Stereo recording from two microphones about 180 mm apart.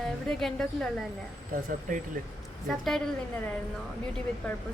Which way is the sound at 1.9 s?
45° right (ahead or behind).